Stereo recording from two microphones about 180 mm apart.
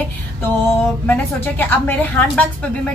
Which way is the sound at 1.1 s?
10° left (ahead or behind).